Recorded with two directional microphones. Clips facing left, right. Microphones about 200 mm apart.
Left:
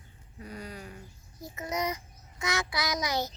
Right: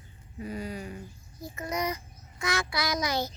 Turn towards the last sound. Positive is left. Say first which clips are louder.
# right 1 dB
turn(degrees=20)  # may be behind; listen again after turning